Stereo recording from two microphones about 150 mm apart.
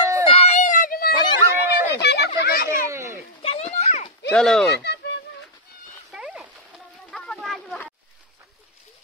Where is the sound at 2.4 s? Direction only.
90° left.